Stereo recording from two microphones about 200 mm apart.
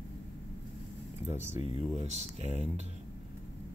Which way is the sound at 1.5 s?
30° left (ahead or behind).